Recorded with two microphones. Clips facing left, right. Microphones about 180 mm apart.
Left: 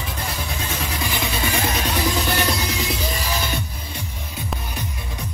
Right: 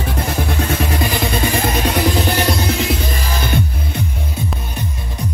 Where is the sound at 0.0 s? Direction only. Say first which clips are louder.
Right 8 dB; 55° right (ahead or behind).